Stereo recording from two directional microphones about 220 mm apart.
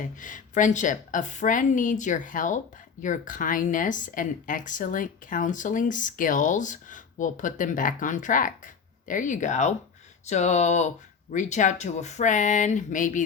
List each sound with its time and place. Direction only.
0.0 s speech: 35° left (ahead or behind)